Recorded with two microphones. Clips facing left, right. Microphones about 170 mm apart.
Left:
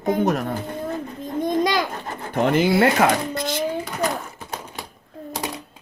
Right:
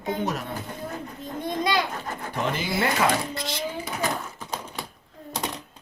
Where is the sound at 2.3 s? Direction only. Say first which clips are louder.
Left 10 dB; 55° left (ahead or behind).